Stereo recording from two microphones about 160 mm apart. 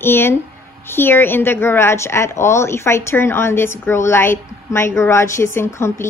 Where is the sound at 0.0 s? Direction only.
15° left (ahead or behind).